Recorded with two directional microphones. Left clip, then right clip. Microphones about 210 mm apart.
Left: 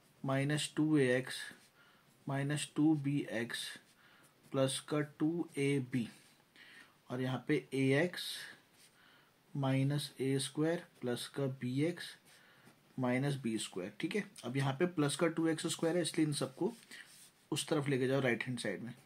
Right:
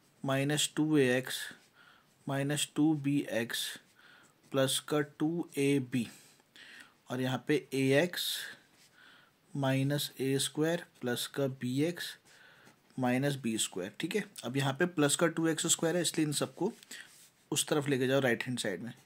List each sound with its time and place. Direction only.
0.2 s speech: 40° right (ahead or behind)
9.6 s speech: 40° right (ahead or behind)